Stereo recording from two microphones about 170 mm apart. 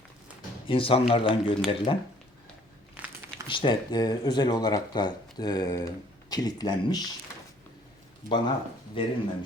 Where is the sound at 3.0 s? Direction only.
10° right (ahead or behind).